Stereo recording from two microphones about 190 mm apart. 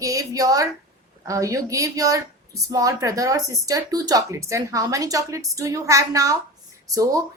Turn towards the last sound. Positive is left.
turn(degrees=-15)  # may be behind; listen again after turning